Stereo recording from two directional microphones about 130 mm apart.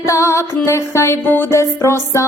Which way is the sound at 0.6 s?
20° left (ahead or behind).